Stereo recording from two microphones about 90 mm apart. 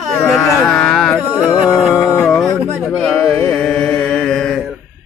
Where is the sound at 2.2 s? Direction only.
5° left (ahead or behind).